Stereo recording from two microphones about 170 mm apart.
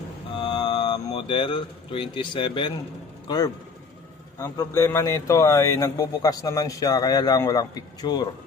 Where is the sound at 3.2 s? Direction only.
25° left (ahead or behind).